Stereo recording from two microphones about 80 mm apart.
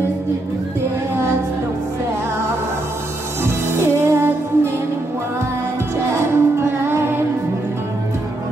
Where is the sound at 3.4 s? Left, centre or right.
Right.